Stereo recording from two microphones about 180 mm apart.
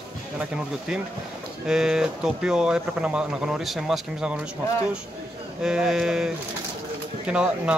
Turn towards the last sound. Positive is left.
turn(degrees=-5)  # may be behind; listen again after turning